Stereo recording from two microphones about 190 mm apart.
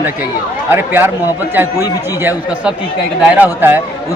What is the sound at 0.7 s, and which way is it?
Speech, 10° right (ahead or behind).